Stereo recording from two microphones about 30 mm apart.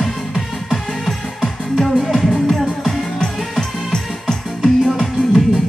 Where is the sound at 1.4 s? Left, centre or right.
Centre.